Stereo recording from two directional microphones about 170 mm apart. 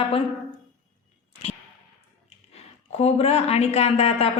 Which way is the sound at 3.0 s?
35° left (ahead or behind).